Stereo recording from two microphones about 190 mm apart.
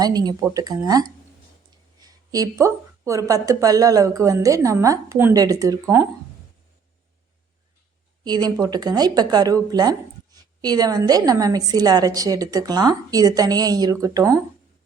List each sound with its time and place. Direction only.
0.0 s a woman's voice: 20° right (ahead or behind)
8.2 s a woman's voice: 20° right (ahead or behind)